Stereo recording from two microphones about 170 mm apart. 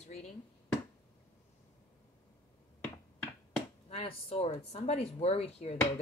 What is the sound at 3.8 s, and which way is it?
Speech, 35° left (ahead or behind).